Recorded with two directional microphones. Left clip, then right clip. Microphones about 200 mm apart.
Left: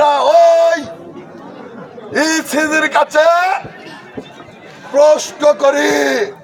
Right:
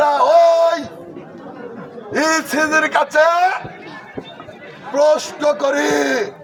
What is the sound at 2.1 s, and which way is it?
A man's voice, centre (ahead or behind).